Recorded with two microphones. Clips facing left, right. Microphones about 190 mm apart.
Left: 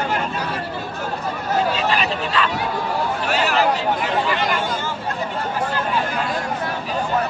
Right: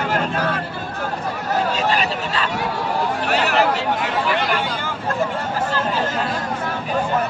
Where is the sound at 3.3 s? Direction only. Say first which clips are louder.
Right 1 dB; 65° right (ahead or behind).